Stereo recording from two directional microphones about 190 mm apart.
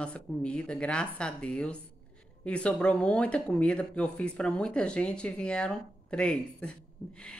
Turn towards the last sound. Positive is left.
turn(degrees=5)  # may be behind; listen again after turning